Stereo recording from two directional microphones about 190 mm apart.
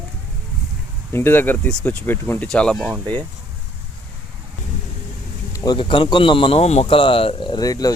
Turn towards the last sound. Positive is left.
turn(degrees=20)  # may be behind; listen again after turning